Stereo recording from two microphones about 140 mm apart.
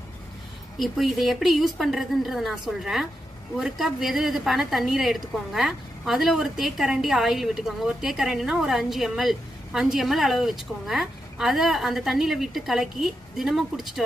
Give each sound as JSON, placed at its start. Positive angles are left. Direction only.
{"t": 0.7, "sound": "a woman's voice", "side_deg": 0}